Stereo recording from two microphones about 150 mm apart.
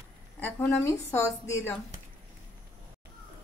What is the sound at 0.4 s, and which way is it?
Speech, 15° left (ahead or behind).